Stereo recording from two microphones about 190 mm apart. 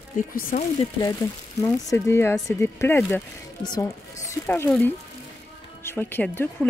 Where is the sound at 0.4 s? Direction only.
45° left (ahead or behind).